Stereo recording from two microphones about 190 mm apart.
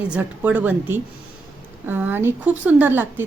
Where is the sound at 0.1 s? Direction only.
10° right (ahead or behind).